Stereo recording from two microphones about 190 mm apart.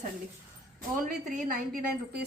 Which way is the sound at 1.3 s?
45° right (ahead or behind).